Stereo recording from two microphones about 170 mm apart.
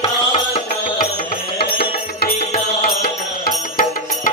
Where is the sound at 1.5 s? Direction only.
70° left (ahead or behind).